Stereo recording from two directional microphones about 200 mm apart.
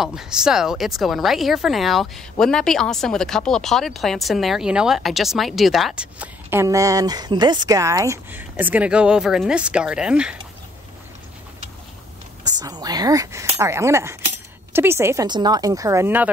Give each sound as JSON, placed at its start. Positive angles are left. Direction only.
{"t": 0.0, "sound": "speech", "side_deg": 0}
{"t": 12.4, "sound": "speech", "side_deg": -20}